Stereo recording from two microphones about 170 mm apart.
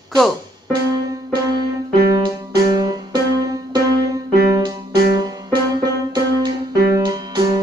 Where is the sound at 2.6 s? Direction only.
25° right (ahead or behind).